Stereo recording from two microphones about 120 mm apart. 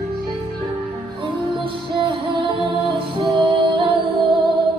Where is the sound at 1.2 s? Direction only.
40° right (ahead or behind).